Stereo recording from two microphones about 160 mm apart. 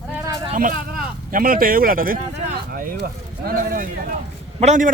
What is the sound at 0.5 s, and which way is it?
Speech, 55° right (ahead or behind).